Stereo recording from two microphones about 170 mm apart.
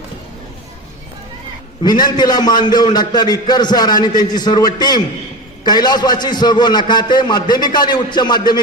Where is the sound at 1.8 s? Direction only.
25° left (ahead or behind).